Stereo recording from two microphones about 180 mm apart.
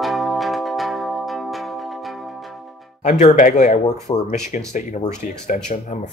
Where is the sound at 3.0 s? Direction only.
40° left (ahead or behind).